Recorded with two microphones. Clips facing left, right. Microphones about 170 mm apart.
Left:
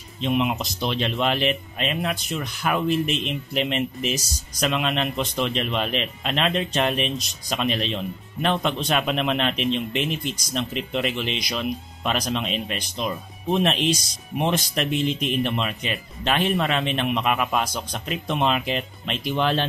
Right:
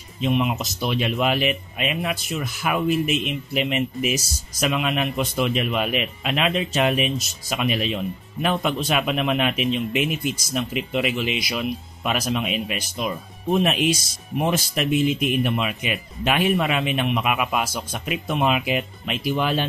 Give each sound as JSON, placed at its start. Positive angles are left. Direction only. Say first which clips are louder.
{"t": 0.2, "sound": "a man's voice", "louder": "right 1 dB", "side_deg": 0}